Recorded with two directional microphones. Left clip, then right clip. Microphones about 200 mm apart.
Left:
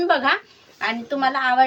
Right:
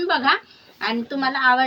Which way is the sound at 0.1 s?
25° left (ahead or behind).